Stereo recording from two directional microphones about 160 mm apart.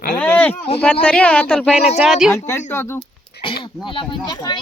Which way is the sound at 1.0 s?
5° left (ahead or behind).